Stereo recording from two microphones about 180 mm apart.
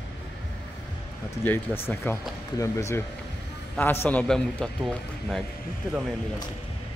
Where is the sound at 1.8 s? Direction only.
15° left (ahead or behind).